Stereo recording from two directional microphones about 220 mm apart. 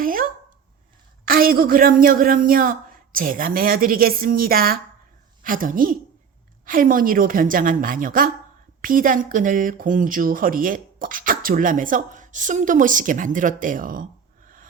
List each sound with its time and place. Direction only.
0.0 s dog: 40° right (ahead or behind)
1.2 s a woman's voice: 40° right (ahead or behind)